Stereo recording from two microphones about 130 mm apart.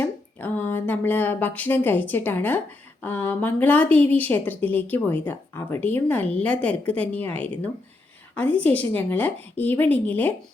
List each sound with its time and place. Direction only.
0.0 s speech: 15° left (ahead or behind)